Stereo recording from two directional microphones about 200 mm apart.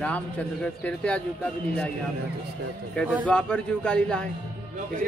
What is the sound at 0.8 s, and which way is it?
Speech, 5° left (ahead or behind).